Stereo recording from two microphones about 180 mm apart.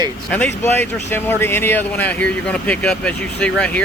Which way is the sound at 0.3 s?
5° left (ahead or behind).